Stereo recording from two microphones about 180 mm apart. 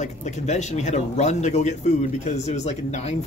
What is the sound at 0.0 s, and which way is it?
Speech, 40° left (ahead or behind).